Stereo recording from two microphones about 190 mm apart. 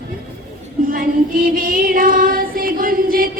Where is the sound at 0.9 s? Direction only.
45° right (ahead or behind).